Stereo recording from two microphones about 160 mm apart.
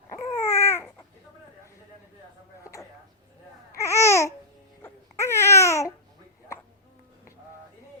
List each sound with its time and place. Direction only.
0.1 s baby cry: 20° left (ahead or behind)
3.8 s babbling: 15° left (ahead or behind)